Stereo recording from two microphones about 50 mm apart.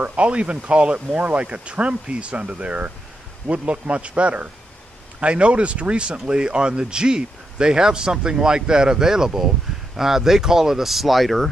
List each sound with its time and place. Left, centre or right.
0.0 s speech: right; by 11.5 s centre